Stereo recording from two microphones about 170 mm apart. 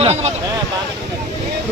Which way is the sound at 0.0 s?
40° right (ahead or behind).